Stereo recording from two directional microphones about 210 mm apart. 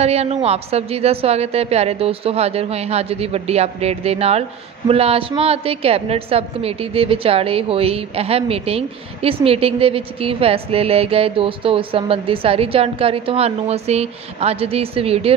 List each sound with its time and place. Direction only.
0.0 s a woman's voice: 30° right (ahead or behind)